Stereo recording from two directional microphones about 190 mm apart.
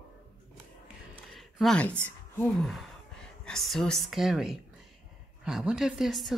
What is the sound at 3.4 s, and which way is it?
A woman's voice, centre (ahead or behind).